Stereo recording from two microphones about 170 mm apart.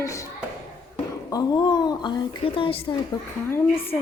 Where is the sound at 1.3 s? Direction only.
25° left (ahead or behind).